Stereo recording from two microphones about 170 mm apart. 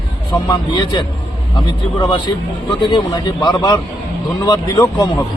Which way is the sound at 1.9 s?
25° left (ahead or behind).